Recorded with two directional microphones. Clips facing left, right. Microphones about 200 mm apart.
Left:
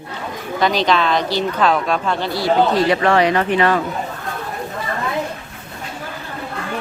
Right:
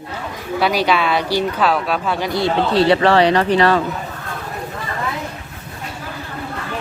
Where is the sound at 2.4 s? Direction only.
30° right (ahead or behind).